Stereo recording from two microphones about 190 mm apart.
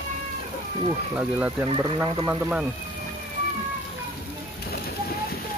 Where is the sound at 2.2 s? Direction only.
10° right (ahead or behind).